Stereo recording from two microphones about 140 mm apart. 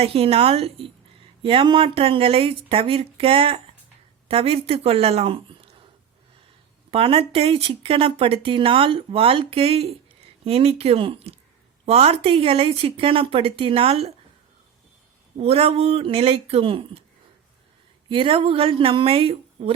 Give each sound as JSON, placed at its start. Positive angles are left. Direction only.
{"t": 0.0, "sound": "speech", "side_deg": -45}
{"t": 6.9, "sound": "speech", "side_deg": -40}
{"t": 15.4, "sound": "speech", "side_deg": -45}
{"t": 18.1, "sound": "speech", "side_deg": -40}